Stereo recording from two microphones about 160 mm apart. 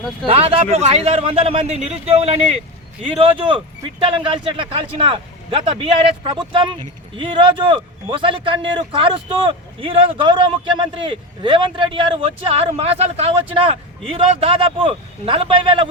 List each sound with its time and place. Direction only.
0.3 s a man's voice: 40° right (ahead or behind)